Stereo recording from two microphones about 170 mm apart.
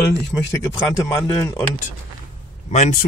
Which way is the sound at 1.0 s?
20° left (ahead or behind).